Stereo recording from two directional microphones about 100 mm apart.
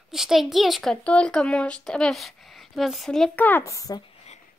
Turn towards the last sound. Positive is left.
turn(degrees=35)  # may be behind; listen again after turning